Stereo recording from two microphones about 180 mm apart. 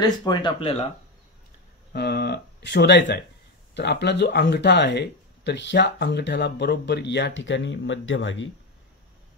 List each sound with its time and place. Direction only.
0.2 s speech: 25° left (ahead or behind)
1.9 s speech: 60° left (ahead or behind); by 8.5 s 90° left